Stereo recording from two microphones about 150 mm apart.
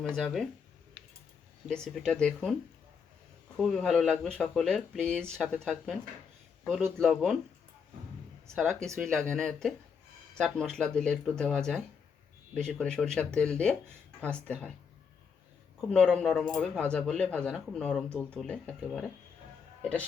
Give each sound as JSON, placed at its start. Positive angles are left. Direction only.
{"t": 0.1, "sound": "speech", "side_deg": 5}
{"t": 1.6, "sound": "speech", "side_deg": 5}
{"t": 3.6, "sound": "speech", "side_deg": 0}
{"t": 7.0, "sound": "speech", "side_deg": 0}
{"t": 9.0, "sound": "speech", "side_deg": 5}
{"t": 15.9, "sound": "speech", "side_deg": 5}